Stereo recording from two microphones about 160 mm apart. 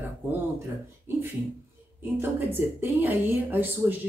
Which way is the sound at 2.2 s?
15° right (ahead or behind).